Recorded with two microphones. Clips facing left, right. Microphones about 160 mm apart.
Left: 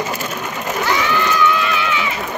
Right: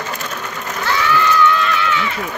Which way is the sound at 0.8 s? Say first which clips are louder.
Right 1 dB; 15° left (ahead or behind).